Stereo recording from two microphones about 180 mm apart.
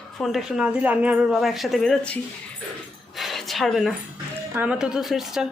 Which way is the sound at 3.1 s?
Centre (ahead or behind).